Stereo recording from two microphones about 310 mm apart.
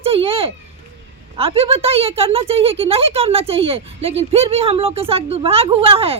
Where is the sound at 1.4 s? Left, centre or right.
Centre.